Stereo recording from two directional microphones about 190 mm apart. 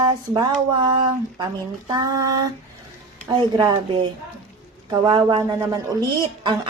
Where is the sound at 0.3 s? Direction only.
20° right (ahead or behind).